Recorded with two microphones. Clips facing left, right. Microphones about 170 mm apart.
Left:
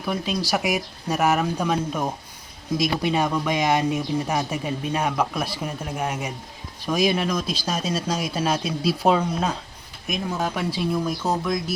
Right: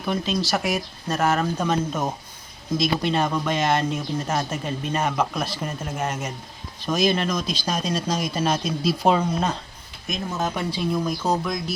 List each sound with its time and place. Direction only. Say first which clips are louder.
0.0 s speech: right 1 dB; 5° left (ahead or behind)
1.5 s speech: even; centre (ahead or behind)
6.1 s speech: even; 10° left (ahead or behind)